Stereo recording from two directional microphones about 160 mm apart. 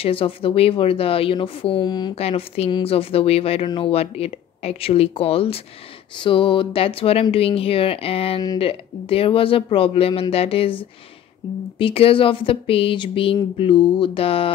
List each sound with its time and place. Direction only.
0.0 s speech: 35° left (ahead or behind)
2.1 s speech: 40° left (ahead or behind)